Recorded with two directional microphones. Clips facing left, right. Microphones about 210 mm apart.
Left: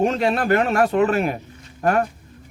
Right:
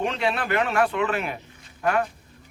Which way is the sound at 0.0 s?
40° left (ahead or behind).